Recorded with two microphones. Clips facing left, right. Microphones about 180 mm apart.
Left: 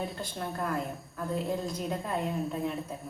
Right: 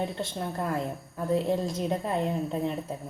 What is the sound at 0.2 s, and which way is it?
Speech, 25° right (ahead or behind).